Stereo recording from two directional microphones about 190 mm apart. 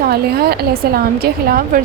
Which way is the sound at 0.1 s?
55° right (ahead or behind).